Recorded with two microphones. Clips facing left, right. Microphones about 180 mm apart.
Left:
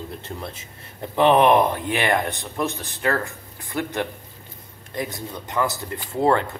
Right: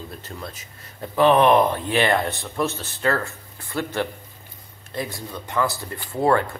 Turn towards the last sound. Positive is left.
turn(degrees=20)  # may be behind; listen again after turning